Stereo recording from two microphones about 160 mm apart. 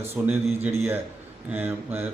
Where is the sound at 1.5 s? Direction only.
10° right (ahead or behind).